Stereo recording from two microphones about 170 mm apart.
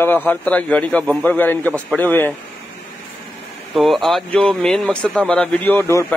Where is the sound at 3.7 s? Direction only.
Centre (ahead or behind).